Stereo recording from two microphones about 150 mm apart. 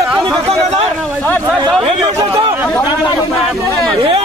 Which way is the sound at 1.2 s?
10° left (ahead or behind).